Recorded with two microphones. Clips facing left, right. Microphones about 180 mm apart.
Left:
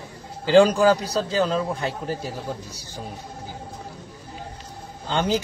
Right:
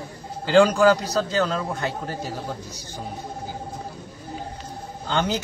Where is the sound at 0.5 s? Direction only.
30° left (ahead or behind).